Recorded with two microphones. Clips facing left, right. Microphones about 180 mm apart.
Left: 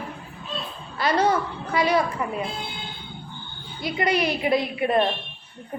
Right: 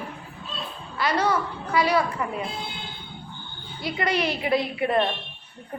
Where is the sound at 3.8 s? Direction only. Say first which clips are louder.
Left 2 dB; 15° left (ahead or behind).